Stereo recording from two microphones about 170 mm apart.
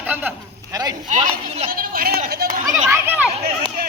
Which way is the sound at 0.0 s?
10° right (ahead or behind).